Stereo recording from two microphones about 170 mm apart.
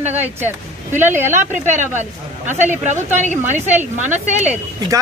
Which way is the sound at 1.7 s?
45° right (ahead or behind).